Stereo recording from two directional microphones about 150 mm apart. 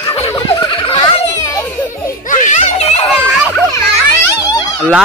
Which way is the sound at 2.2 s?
55° left (ahead or behind).